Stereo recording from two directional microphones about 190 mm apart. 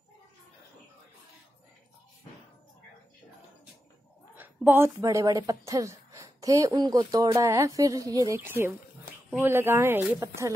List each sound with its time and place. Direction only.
4.4 s speech: 10° right (ahead or behind)